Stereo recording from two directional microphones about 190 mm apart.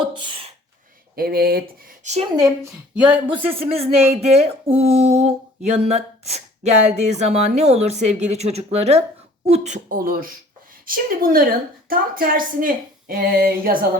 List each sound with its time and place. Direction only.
0.0 s a sound: 25° right (ahead or behind)
1.1 s a woman's voice: 55° right (ahead or behind)
2.9 s speech: 5° right (ahead or behind)
3.5 s a woman's voice: 30° right (ahead or behind); by 13.8 s 50° right (ahead or behind)